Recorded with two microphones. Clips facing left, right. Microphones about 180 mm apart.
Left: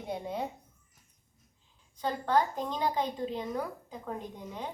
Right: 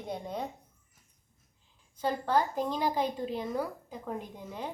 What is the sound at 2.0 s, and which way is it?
A woman's voice, 10° right (ahead or behind).